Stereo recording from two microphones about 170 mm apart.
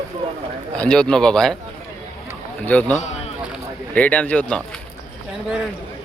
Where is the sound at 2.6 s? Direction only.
10° left (ahead or behind).